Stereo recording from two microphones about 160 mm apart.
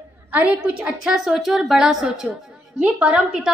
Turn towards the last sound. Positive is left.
turn(degrees=-5)  # may be behind; listen again after turning